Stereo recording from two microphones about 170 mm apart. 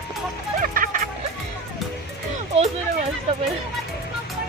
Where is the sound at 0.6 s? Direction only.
55° right (ahead or behind).